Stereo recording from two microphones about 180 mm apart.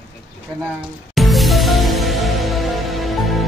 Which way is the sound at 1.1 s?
Centre (ahead or behind).